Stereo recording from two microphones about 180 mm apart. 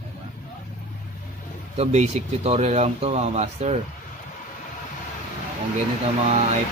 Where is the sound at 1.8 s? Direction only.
35° right (ahead or behind).